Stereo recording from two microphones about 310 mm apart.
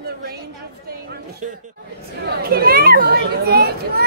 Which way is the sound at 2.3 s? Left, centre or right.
Right.